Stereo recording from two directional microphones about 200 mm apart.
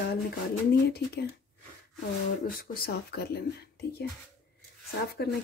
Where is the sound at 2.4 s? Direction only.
50° left (ahead or behind).